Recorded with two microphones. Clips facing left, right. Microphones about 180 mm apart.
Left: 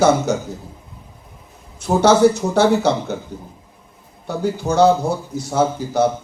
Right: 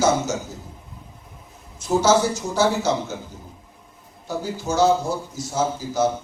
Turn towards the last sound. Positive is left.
turn(degrees=60)  # may be behind; listen again after turning